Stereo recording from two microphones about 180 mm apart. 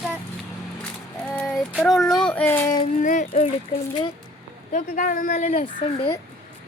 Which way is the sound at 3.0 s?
45° left (ahead or behind).